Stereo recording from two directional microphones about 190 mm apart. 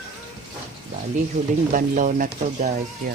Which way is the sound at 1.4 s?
40° right (ahead or behind).